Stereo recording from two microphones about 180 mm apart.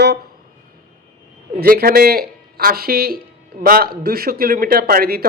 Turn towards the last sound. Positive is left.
turn(degrees=-55)  # may be behind; listen again after turning